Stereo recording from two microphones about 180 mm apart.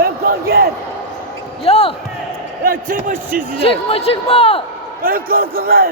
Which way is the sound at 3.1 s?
50° right (ahead or behind).